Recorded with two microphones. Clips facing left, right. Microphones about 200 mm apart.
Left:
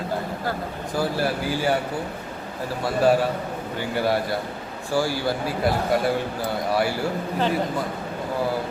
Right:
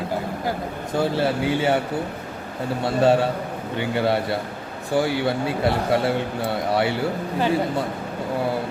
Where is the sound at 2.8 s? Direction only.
25° right (ahead or behind).